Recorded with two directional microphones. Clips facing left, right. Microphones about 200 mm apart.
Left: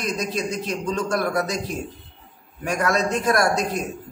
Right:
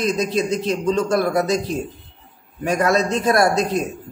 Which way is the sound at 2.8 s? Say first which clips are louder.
Right 2 dB; 35° right (ahead or behind).